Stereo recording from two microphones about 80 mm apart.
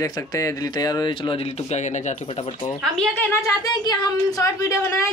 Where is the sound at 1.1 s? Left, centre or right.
Left.